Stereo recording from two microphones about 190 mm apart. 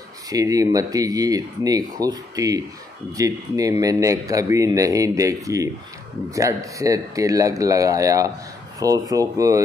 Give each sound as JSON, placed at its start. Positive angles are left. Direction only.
{"t": 0.3, "sound": "speech", "side_deg": -20}